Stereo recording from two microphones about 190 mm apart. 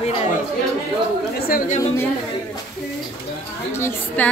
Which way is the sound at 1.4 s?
50° left (ahead or behind).